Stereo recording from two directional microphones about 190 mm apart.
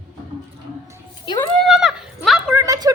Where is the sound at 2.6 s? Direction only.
20° right (ahead or behind).